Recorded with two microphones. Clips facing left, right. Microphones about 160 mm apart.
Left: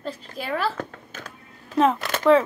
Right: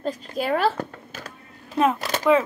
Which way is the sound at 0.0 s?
50° right (ahead or behind).